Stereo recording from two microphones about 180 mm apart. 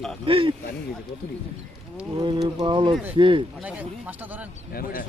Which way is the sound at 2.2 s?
20° right (ahead or behind).